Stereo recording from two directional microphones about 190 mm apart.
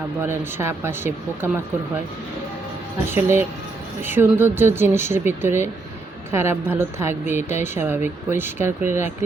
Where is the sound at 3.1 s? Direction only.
10° right (ahead or behind).